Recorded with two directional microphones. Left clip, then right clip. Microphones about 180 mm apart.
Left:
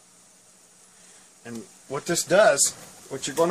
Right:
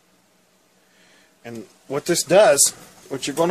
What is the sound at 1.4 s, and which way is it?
Speech, 45° right (ahead or behind).